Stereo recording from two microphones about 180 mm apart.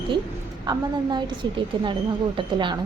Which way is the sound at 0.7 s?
25° right (ahead or behind).